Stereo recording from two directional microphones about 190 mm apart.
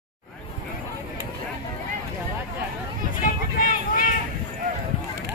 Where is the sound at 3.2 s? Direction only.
45° left (ahead or behind).